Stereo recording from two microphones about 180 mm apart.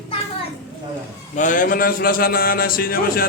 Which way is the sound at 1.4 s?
45° left (ahead or behind).